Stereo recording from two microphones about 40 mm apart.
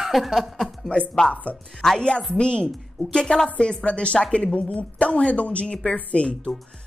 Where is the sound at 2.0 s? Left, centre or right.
Left.